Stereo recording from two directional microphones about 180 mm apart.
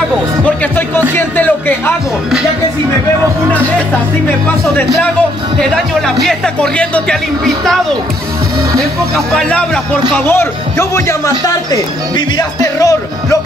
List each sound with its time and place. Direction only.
0.7 s speech: 10° left (ahead or behind)
5.6 s speech: 5° left (ahead or behind)
9.1 s speech: 5° left (ahead or behind); by 13.4 s 20° left (ahead or behind)